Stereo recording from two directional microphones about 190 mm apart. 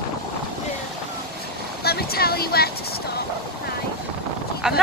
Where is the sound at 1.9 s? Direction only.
55° left (ahead or behind).